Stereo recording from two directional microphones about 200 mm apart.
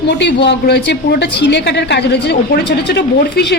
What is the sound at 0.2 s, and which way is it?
A woman's voice, 60° left (ahead or behind).